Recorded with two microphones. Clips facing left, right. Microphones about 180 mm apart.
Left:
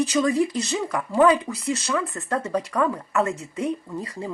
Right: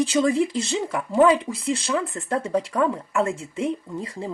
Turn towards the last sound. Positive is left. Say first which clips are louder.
# even
turn(degrees=-25)  # may be behind; listen again after turning